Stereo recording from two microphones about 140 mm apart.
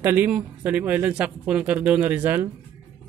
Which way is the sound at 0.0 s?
15° right (ahead or behind).